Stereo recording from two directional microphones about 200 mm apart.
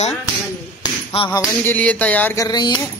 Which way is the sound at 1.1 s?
25° left (ahead or behind).